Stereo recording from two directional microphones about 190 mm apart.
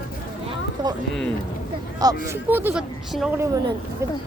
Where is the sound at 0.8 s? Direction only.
20° right (ahead or behind).